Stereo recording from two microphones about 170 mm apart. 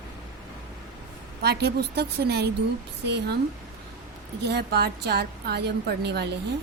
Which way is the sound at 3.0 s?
90° right.